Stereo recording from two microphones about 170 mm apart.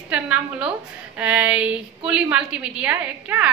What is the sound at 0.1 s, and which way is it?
A woman's voice, 5° right (ahead or behind).